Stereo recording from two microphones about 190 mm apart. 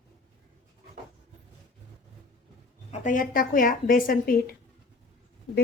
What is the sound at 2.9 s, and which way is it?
Speech, 40° left (ahead or behind).